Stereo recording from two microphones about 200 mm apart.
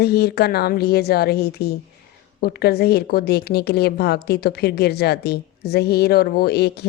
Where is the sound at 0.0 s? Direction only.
50° left (ahead or behind).